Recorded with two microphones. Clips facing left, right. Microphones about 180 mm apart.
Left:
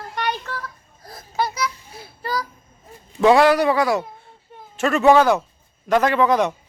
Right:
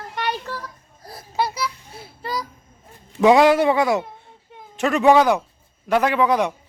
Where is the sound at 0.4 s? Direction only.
15° right (ahead or behind).